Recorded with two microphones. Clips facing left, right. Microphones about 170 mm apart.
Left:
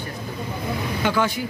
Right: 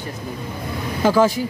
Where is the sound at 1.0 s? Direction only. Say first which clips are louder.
Right 7 dB; 35° right (ahead or behind).